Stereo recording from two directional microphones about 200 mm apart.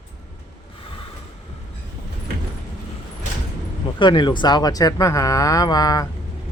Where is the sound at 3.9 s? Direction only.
25° left (ahead or behind).